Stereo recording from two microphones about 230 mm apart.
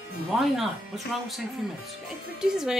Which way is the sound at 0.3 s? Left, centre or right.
Centre.